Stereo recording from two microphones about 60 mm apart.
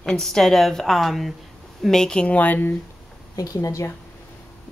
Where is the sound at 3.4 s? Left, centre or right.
Left.